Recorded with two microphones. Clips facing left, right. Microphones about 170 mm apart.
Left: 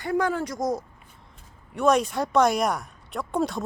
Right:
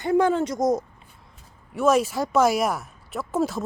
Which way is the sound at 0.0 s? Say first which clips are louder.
Right 5 dB; 25° right (ahead or behind).